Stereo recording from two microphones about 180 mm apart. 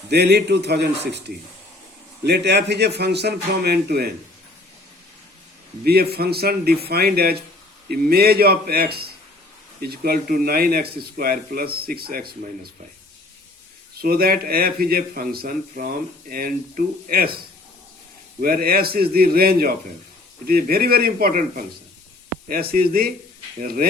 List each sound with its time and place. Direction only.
0.1 s speech: 65° right (ahead or behind)
2.2 s speech: 65° right (ahead or behind)
5.8 s speech: 60° right (ahead or behind)
14.0 s speech: 55° right (ahead or behind)
18.3 s speech: 55° right (ahead or behind)